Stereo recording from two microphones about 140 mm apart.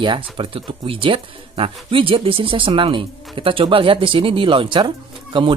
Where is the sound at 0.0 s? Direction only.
35° right (ahead or behind).